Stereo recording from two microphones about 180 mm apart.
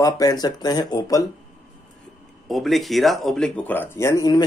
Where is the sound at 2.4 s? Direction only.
Centre (ahead or behind).